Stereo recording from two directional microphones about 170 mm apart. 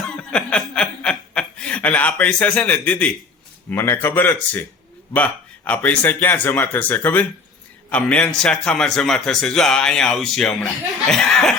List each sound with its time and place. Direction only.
0.2 s chuckle: 5° left (ahead or behind)
3.7 s a man's voice: 15° left (ahead or behind)